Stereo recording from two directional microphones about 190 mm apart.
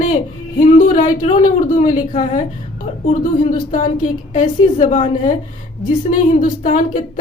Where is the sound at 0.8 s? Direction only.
40° left (ahead or behind).